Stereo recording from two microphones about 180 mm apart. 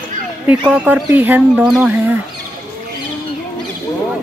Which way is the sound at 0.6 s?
5° right (ahead or behind).